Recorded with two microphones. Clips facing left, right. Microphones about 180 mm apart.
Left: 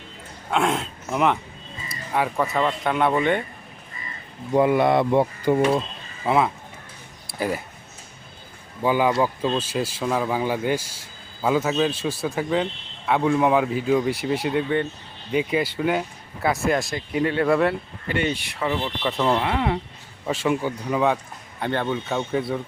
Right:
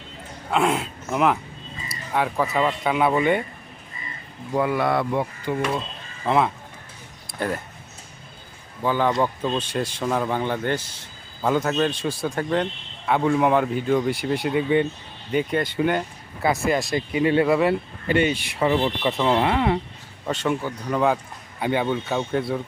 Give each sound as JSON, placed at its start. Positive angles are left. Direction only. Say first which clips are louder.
{"t": 0.5, "sound": "speech", "louder": "right 1 dB", "side_deg": -5}
{"t": 4.5, "sound": "speech", "louder": "left 4 dB", "side_deg": 20}
{"t": 5.5, "sound": "speech", "louder": "left 7 dB", "side_deg": 45}
{"t": 6.2, "sound": "speech", "louder": "even", "side_deg": 0}
{"t": 8.8, "sound": "speech", "louder": "left 1 dB", "side_deg": 10}
{"t": 18.6, "sound": "speech", "louder": "right 5 dB", "side_deg": -25}
{"t": 19.1, "sound": "speech", "louder": "even", "side_deg": -5}
{"t": 21.6, "sound": "speech", "louder": "right 2 dB", "side_deg": -10}